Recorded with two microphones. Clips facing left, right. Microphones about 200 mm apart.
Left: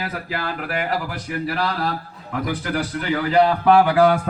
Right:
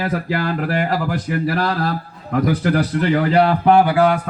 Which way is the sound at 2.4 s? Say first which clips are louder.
Right 6 dB; 40° right (ahead or behind).